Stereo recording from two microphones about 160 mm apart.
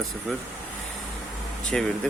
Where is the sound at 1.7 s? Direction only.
5° left (ahead or behind).